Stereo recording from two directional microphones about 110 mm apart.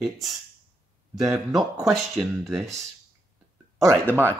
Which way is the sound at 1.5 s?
Centre (ahead or behind).